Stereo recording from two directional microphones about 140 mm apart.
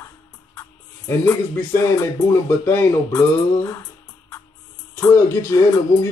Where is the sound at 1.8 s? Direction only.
20° left (ahead or behind).